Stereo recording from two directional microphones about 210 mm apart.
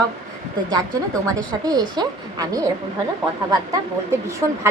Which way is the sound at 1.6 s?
20° right (ahead or behind).